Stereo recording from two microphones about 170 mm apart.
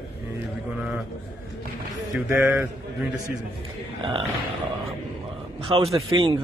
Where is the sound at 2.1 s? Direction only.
15° right (ahead or behind).